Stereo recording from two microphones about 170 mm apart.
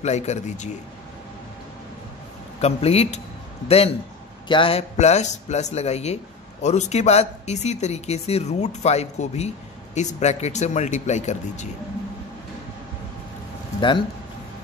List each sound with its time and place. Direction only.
0.0 s speech: 40° left (ahead or behind)
2.6 s speech: 35° left (ahead or behind)
13.7 s speech: 30° left (ahead or behind)